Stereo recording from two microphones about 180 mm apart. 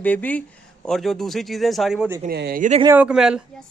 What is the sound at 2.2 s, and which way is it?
Speech, 60° right (ahead or behind).